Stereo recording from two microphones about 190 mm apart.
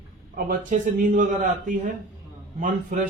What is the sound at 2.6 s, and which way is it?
Speech, 45° right (ahead or behind).